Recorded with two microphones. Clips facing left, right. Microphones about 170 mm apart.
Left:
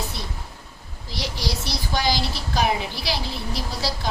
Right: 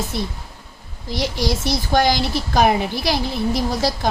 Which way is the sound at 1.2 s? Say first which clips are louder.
Right 7 dB; 50° right (ahead or behind).